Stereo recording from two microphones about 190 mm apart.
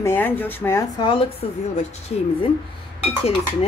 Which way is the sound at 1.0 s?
25° left (ahead or behind).